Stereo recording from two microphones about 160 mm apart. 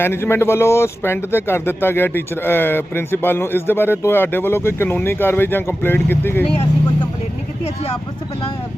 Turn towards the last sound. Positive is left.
turn(degrees=35)  # may be behind; listen again after turning